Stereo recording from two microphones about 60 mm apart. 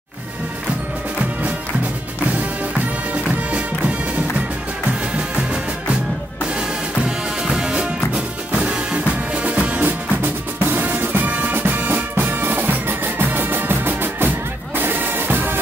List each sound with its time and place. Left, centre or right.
3.3 s music: right
6.5 s music: centre; by 15.5 s right